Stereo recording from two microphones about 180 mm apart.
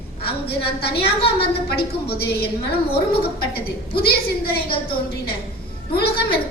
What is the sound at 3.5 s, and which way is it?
A woman's voice, 60° left (ahead or behind).